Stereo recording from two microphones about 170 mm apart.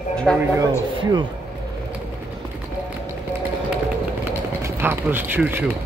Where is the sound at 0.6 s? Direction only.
25° right (ahead or behind).